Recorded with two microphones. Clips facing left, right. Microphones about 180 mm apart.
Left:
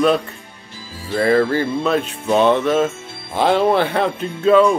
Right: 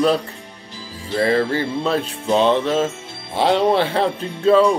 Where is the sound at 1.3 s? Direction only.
50° left (ahead or behind).